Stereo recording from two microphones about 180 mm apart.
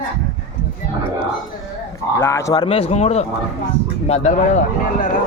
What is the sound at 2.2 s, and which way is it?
Speech, 15° left (ahead or behind).